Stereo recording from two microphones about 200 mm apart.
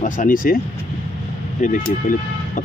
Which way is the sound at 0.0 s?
45° left (ahead or behind).